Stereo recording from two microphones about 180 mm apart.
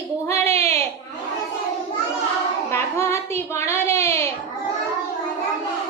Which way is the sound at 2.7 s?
15° left (ahead or behind).